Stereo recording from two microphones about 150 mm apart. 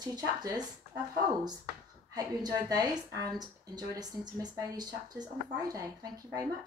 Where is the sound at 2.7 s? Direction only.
25° right (ahead or behind).